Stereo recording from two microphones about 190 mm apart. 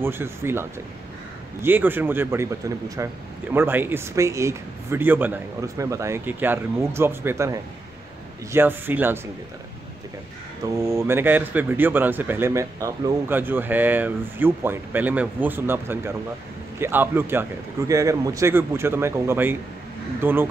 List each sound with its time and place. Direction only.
0.0 s speech: 10° right (ahead or behind)
10.8 s speech: 15° right (ahead or behind)